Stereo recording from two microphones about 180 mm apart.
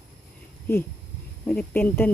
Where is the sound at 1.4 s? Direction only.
10° left (ahead or behind).